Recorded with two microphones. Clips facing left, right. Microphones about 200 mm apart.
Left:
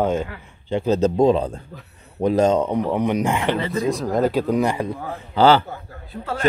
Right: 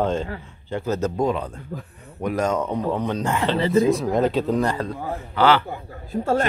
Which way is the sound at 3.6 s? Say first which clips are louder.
Right 6 dB; 30° right (ahead or behind).